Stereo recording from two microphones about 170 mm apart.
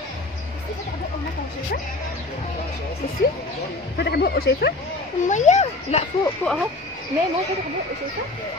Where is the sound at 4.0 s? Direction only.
70° left (ahead or behind).